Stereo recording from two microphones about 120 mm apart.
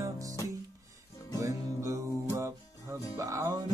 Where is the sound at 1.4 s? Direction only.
25° right (ahead or behind).